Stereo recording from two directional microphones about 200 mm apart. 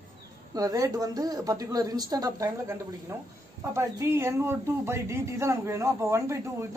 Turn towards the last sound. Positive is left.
turn(degrees=-15)  # may be behind; listen again after turning